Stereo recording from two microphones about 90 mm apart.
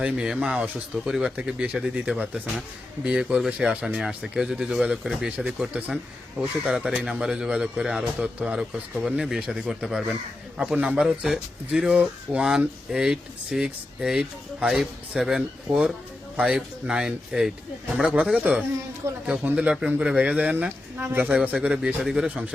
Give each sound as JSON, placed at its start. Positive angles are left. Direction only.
{"t": 0.0, "sound": "speech", "side_deg": -10}
{"t": 19.0, "sound": "speech", "side_deg": -30}
{"t": 19.5, "sound": "speech", "side_deg": -10}